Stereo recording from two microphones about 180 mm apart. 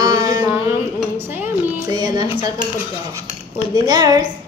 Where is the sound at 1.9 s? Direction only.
20° right (ahead or behind).